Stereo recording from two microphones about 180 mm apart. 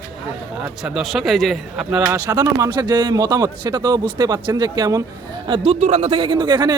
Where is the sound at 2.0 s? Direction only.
20° right (ahead or behind).